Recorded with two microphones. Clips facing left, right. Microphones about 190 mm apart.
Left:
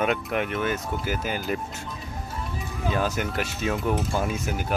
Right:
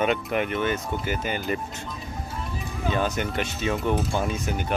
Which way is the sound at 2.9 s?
Centre (ahead or behind).